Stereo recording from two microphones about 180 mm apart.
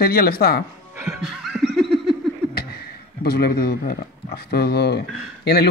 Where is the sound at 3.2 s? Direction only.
60° left (ahead or behind).